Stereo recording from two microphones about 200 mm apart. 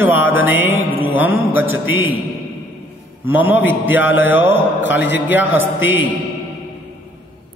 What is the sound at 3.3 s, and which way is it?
Mantra, 10° right (ahead or behind).